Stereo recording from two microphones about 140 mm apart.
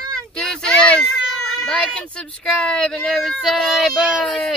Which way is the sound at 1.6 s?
5° left (ahead or behind).